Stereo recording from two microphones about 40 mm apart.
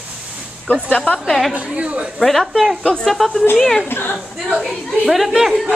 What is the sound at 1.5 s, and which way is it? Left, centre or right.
Speech, right.